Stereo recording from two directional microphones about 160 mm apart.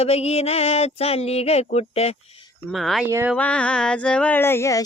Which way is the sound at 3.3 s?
5° left (ahead or behind).